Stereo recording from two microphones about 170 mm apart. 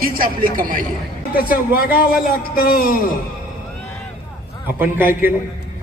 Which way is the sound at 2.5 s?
60° left (ahead or behind).